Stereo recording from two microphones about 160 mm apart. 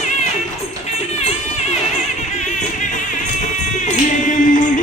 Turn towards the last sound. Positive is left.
turn(degrees=55)  # may be behind; listen again after turning